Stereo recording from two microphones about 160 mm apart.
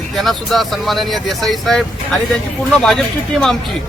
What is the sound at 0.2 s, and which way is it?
Speech, centre (ahead or behind).